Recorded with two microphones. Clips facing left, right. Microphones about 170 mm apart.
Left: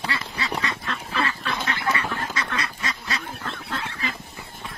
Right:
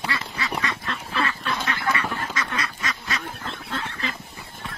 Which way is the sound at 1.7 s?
30° left (ahead or behind).